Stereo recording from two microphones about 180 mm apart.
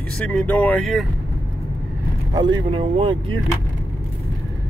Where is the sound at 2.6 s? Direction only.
30° right (ahead or behind).